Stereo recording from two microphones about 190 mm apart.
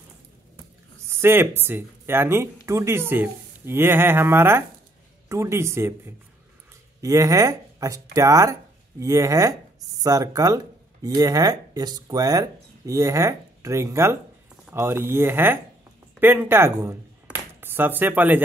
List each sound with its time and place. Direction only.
1.0 s speech: 10° right (ahead or behind)